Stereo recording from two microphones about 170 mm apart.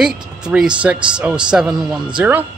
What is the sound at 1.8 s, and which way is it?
Mantra, 5° right (ahead or behind).